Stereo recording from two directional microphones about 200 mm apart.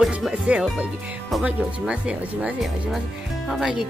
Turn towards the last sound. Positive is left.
turn(degrees=0)  # may be behind; listen again after turning